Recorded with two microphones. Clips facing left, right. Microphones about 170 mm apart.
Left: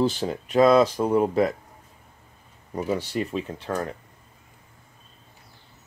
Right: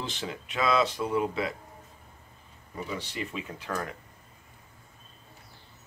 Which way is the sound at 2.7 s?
40° left (ahead or behind).